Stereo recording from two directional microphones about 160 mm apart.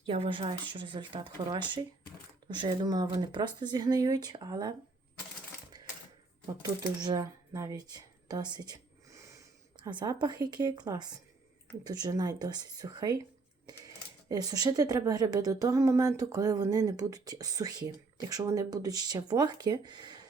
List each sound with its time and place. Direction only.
0.0 s speech: 30° right (ahead or behind)
6.6 s speech: 25° right (ahead or behind)